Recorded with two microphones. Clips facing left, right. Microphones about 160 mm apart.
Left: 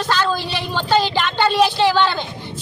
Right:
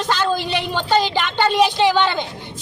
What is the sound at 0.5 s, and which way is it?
Speech, 15° right (ahead or behind).